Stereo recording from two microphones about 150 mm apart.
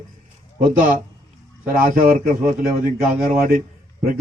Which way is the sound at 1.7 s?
65° right (ahead or behind).